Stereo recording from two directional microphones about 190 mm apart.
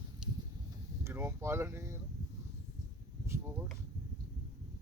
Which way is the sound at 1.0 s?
15° right (ahead or behind).